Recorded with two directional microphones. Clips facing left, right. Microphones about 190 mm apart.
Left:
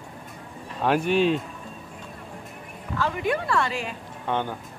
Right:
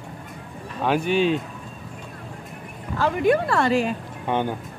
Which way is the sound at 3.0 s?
40° right (ahead or behind).